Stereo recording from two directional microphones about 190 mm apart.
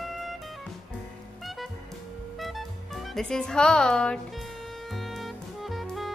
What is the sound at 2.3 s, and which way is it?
Music, centre (ahead or behind).